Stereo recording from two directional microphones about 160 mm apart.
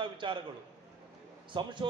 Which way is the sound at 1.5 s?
30° right (ahead or behind).